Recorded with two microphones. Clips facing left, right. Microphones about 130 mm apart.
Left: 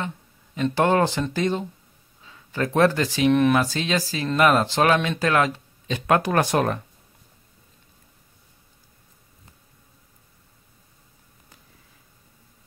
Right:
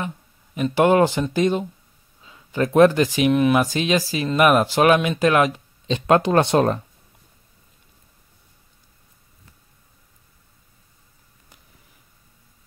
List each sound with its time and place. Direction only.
0.7 s speech: 15° right (ahead or behind)